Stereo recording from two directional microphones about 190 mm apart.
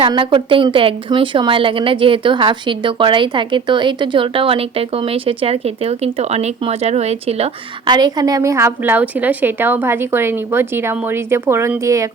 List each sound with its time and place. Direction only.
0.0 s a woman's voice: 25° right (ahead or behind)